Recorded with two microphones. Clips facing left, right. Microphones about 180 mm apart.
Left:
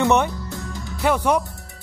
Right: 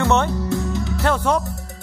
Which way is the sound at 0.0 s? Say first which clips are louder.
Left 1 dB; 15° left (ahead or behind).